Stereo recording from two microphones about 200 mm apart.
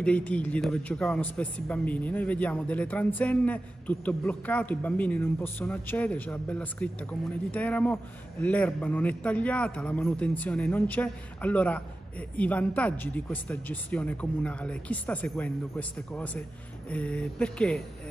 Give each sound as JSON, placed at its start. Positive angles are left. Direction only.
{"t": 0.0, "sound": "a man's voice", "side_deg": 5}